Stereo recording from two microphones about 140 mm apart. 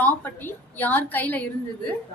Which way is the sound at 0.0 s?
15° left (ahead or behind).